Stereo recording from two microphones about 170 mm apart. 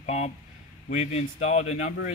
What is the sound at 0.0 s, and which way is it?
Speech, 40° left (ahead or behind).